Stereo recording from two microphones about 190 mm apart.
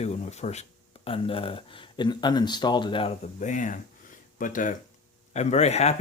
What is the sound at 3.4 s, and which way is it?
Speech, 40° left (ahead or behind).